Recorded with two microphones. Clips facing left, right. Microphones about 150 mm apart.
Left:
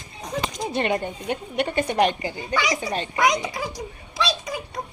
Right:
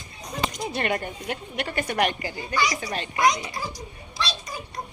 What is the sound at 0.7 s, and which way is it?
A woman's voice, 20° left (ahead or behind).